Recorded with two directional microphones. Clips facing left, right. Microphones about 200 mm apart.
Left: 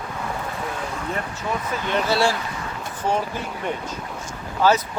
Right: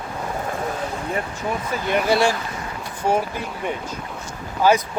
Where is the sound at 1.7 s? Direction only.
10° right (ahead or behind).